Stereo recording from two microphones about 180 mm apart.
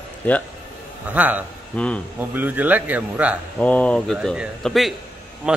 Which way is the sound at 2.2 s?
10° right (ahead or behind).